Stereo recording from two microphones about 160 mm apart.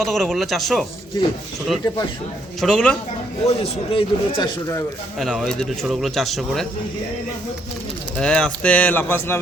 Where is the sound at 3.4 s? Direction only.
35° left (ahead or behind).